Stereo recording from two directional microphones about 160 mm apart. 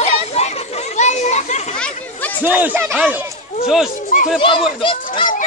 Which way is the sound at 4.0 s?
55° left (ahead or behind).